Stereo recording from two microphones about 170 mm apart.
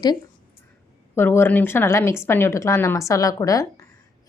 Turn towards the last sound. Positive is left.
turn(degrees=20)  # may be behind; listen again after turning